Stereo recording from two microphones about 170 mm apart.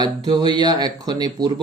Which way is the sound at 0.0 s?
25° right (ahead or behind).